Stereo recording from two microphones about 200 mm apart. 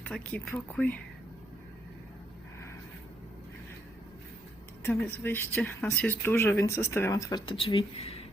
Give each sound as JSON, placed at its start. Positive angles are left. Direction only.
{"t": 0.0, "sound": "speech", "side_deg": 5}
{"t": 4.8, "sound": "speech", "side_deg": 10}